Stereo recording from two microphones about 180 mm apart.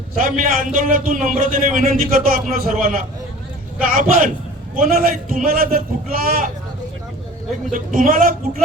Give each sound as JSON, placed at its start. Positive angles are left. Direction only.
{"t": 0.2, "sound": "a man's voice", "side_deg": -50}
{"t": 7.7, "sound": "a man's voice", "side_deg": -50}